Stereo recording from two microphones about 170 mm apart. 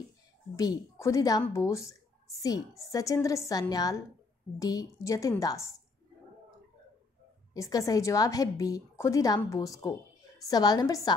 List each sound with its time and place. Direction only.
0.6 s a woman's voice: 20° left (ahead or behind)
7.5 s a woman's voice: 20° left (ahead or behind)